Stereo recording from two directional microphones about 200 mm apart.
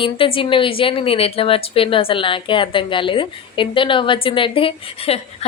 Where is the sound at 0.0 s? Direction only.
25° left (ahead or behind).